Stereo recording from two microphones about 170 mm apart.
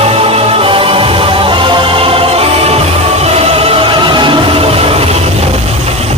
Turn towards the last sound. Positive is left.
turn(degrees=-35)  # may be behind; listen again after turning